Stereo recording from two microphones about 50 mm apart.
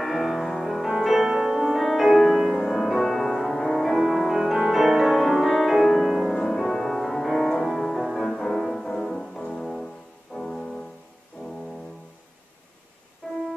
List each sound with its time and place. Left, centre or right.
0.0 s music: centre
8.2 s music: centre
13.2 s music: centre